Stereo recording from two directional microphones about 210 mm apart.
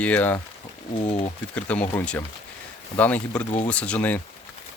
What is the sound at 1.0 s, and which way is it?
Speech, 30° left (ahead or behind).